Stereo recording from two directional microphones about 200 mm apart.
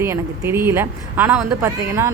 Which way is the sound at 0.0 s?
10° right (ahead or behind).